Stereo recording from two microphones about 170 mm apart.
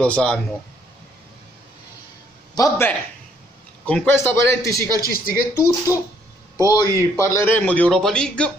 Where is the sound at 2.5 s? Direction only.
20° left (ahead or behind).